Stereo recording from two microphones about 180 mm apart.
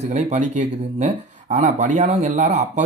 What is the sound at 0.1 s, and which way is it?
Speech, 40° right (ahead or behind).